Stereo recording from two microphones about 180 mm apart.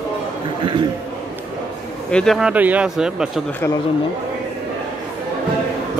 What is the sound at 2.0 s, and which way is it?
Speech, 5° left (ahead or behind).